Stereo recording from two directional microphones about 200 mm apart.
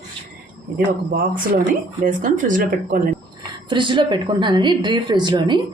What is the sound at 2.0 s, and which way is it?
Speech, 40° right (ahead or behind).